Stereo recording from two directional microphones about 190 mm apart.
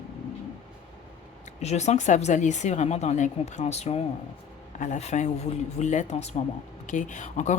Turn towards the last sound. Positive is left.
turn(degrees=40)  # may be behind; listen again after turning